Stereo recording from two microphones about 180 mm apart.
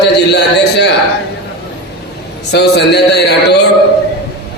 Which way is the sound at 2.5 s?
70° left (ahead or behind).